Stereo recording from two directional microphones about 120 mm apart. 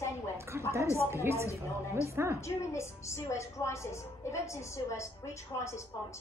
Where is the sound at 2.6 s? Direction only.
25° left (ahead or behind).